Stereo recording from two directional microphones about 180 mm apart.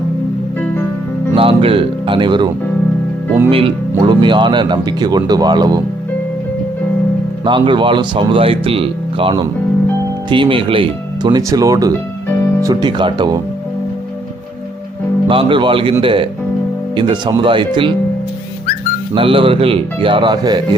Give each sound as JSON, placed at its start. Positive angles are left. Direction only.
{"t": 0.6, "sound": "music", "side_deg": 10}
{"t": 1.4, "sound": "speech", "side_deg": -30}
{"t": 3.5, "sound": "speech", "side_deg": -30}
{"t": 7.4, "sound": "speech", "side_deg": -25}
{"t": 15.3, "sound": "speech", "side_deg": -30}
{"t": 19.1, "sound": "speech", "side_deg": -30}